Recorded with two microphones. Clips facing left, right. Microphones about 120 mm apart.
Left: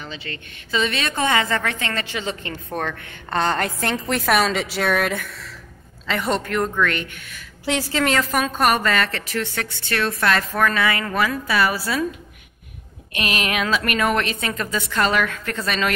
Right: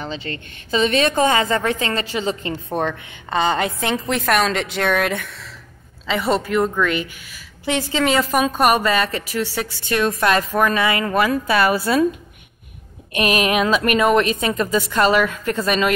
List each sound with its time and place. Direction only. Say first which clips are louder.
0.0 s a woman's voice: right 6 dB; 35° right (ahead or behind)
2.5 s a woman's voice: right 5 dB; 20° right (ahead or behind)
2.9 s a woman's voice: right 2 dB; centre (ahead or behind); by 12.0 s 25° right (ahead or behind)
13.2 s a woman's voice: right 6 dB; 20° right (ahead or behind)